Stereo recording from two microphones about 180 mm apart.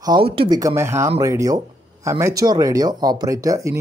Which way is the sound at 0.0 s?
25° right (ahead or behind).